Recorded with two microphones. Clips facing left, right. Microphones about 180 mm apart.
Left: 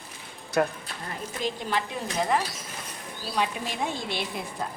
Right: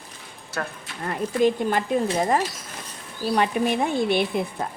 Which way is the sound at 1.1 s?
50° right (ahead or behind).